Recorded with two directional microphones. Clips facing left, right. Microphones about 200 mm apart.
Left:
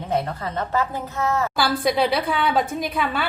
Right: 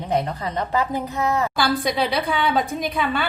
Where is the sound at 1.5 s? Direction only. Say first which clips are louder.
Left 1 dB; centre (ahead or behind).